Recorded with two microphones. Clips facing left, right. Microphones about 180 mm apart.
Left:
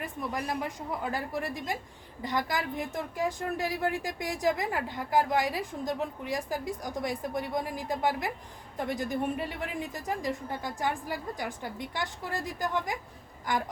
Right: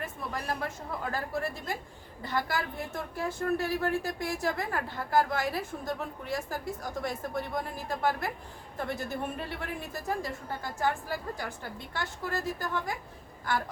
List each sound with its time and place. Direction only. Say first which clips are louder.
0.0 s a woman's voice: left 2 dB; 15° left (ahead or behind)